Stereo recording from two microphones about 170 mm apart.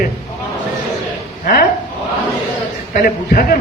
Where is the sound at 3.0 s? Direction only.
60° left (ahead or behind).